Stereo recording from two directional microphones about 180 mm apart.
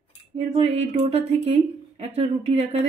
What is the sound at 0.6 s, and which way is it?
Speech, 35° right (ahead or behind).